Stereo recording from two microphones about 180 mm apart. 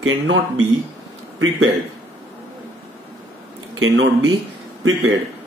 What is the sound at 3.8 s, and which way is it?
Speech, 90° right.